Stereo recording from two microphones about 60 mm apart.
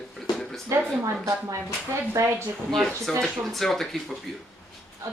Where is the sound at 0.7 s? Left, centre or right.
Right.